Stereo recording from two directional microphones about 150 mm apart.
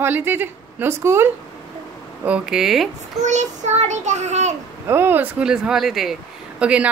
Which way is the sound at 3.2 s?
50° right (ahead or behind).